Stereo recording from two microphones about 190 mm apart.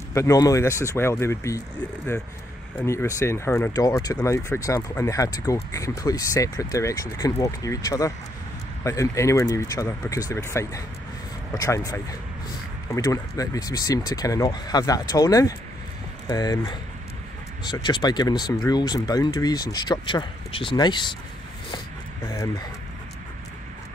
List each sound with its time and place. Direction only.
0.1 s speech: 15° left (ahead or behind)
2.8 s speech: 15° left (ahead or behind)
22.3 s speech: 15° left (ahead or behind)